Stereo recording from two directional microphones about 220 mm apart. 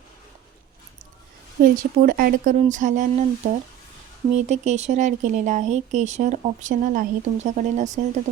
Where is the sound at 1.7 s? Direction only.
40° right (ahead or behind).